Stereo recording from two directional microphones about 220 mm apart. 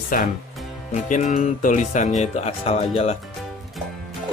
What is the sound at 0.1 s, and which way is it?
Speech, 40° left (ahead or behind).